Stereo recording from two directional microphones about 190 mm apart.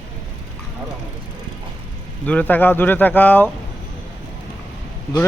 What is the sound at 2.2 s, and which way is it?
Speech, 5° left (ahead or behind).